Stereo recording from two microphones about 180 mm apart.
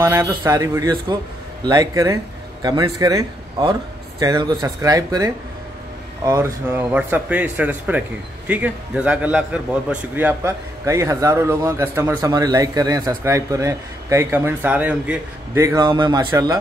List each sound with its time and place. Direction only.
0.0 s a man's voice: 15° right (ahead or behind)
15.8 s a man's voice: 25° right (ahead or behind)